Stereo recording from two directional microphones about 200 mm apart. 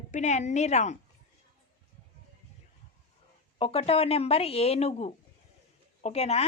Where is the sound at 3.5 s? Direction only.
30° left (ahead or behind).